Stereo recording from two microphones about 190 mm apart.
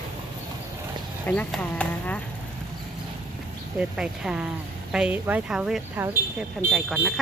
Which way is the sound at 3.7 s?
5° right (ahead or behind).